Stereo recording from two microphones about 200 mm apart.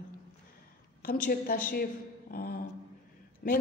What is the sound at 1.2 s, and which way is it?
Speech, 45° left (ahead or behind).